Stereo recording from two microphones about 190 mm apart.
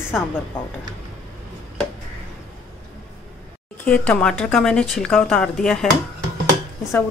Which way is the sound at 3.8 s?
5° left (ahead or behind).